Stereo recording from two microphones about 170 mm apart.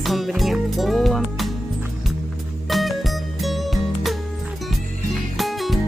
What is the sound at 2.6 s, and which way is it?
Music, centre (ahead or behind).